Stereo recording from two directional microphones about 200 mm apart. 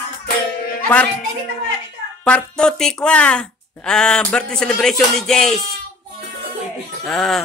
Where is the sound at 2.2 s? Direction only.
5° left (ahead or behind).